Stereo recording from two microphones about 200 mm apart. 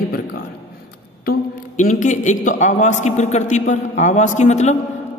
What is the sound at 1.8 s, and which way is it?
A man's voice, 40° left (ahead or behind).